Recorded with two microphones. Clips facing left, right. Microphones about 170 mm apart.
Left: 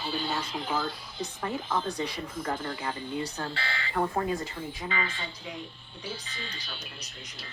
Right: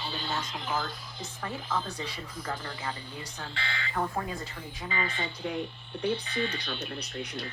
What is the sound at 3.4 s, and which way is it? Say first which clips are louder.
Speech: left 3 dB; 35° left (ahead or behind).